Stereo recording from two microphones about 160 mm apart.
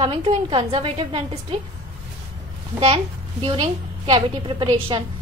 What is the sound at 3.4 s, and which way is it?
A woman's voice, 35° right (ahead or behind).